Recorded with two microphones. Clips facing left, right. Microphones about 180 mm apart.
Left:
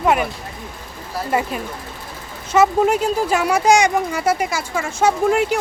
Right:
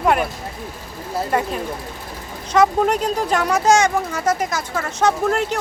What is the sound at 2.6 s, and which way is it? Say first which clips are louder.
Speech: left 1 dB; 5° left (ahead or behind).